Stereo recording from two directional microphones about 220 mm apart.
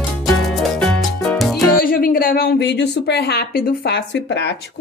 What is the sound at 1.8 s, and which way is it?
A woman's voice, 40° left (ahead or behind).